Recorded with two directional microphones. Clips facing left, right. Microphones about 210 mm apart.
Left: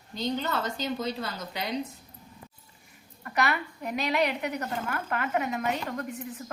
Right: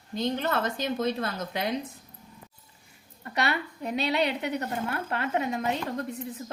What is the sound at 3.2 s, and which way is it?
A woman's voice, 30° right (ahead or behind).